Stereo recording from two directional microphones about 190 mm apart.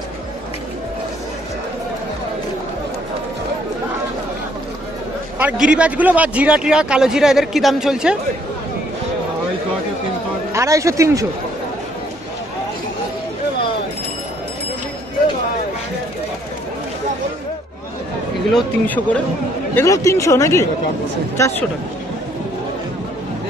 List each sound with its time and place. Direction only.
5.4 s a man's voice: 5° right (ahead or behind)
10.5 s speech: 15° right (ahead or behind)
18.5 s speech: 5° left (ahead or behind)